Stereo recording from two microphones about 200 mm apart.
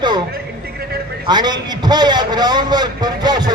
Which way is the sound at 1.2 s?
20° right (ahead or behind).